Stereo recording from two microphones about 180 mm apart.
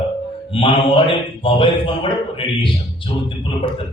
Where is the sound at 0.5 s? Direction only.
30° left (ahead or behind).